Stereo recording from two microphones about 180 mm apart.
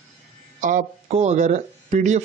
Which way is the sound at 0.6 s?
45° right (ahead or behind).